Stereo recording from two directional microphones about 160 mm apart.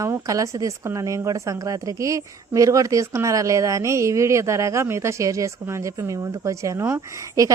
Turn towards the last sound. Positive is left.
turn(degrees=-20)  # may be behind; listen again after turning